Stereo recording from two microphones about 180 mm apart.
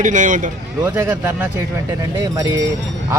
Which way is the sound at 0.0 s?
45° right (ahead or behind).